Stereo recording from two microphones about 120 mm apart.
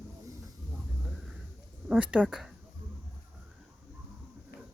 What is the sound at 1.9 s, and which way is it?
Speech, 10° right (ahead or behind).